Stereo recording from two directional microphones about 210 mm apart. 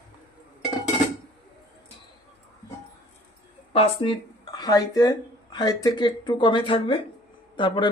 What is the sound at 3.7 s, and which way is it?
Speech, 25° left (ahead or behind).